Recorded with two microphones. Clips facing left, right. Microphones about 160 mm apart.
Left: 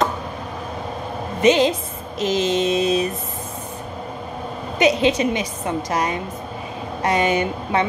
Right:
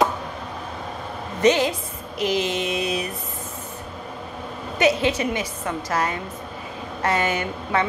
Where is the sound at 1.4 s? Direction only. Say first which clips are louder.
Left 3 dB; 20° left (ahead or behind).